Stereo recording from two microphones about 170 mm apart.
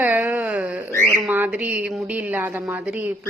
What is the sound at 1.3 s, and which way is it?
A woman's voice, 10° right (ahead or behind).